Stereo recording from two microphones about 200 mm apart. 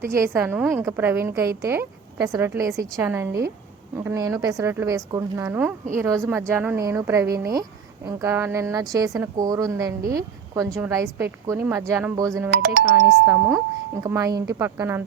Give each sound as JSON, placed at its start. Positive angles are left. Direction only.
{"t": 0.0, "sound": "a woman's voice", "side_deg": -15}
{"t": 12.5, "sound": "speech", "side_deg": -50}
{"t": 13.1, "sound": "a woman's voice", "side_deg": -10}